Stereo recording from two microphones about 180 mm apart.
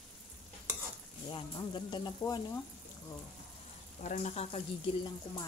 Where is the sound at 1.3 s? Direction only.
25° left (ahead or behind).